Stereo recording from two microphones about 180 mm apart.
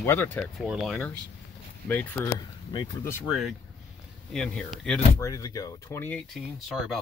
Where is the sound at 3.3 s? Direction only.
Centre (ahead or behind).